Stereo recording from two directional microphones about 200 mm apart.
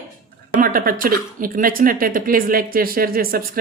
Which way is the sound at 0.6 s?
45° right (ahead or behind).